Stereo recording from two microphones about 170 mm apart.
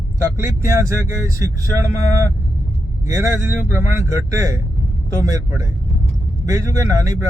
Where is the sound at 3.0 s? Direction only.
15° right (ahead or behind).